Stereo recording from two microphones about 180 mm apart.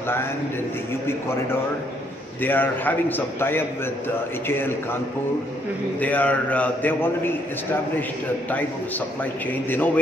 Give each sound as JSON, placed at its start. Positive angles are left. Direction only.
{"t": 1.0, "sound": "a man's voice", "side_deg": 15}
{"t": 5.9, "sound": "a man's voice", "side_deg": 10}
{"t": 9.2, "sound": "a man's voice", "side_deg": 10}